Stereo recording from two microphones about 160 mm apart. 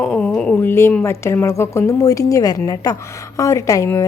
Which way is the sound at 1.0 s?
15° left (ahead or behind).